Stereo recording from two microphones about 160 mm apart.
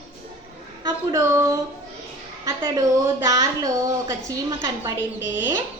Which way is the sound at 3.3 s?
20° right (ahead or behind).